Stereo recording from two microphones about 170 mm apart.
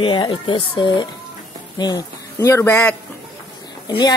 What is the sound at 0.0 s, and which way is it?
Speech, 30° left (ahead or behind).